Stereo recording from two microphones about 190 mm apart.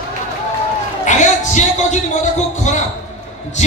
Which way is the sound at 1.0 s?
40° left (ahead or behind).